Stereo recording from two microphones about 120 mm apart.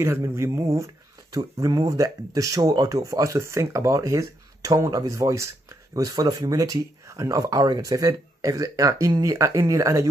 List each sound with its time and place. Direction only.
0.0 s speech: 20° right (ahead or behind)